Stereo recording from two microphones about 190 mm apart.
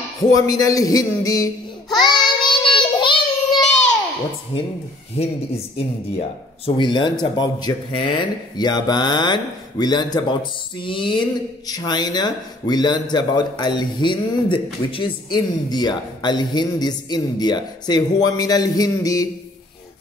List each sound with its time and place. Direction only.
0.2 s speech: 20° left (ahead or behind)
2.0 s child singing: 25° left (ahead or behind)
5.1 s speech: 30° left (ahead or behind)